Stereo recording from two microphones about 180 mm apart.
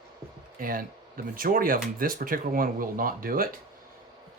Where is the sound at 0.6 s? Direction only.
50° right (ahead or behind).